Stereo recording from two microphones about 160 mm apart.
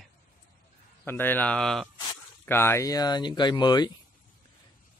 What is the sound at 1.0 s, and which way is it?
Speech, 15° left (ahead or behind).